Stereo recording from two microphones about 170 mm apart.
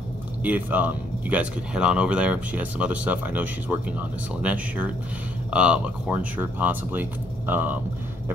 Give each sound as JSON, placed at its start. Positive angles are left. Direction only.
{"t": 0.4, "sound": "speech", "side_deg": -10}